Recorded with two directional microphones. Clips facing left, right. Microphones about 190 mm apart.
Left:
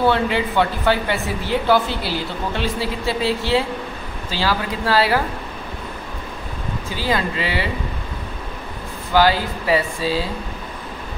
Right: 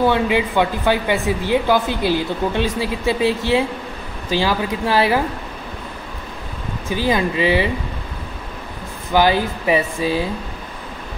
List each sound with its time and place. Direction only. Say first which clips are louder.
0.0 s a woman's voice: right 2 dB; 15° right (ahead or behind)
6.9 s speech: right 4 dB; 20° right (ahead or behind)
9.1 s speech: right 1 dB; 20° right (ahead or behind)